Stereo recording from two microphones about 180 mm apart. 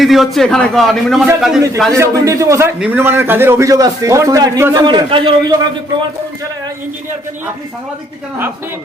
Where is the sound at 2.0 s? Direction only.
15° right (ahead or behind).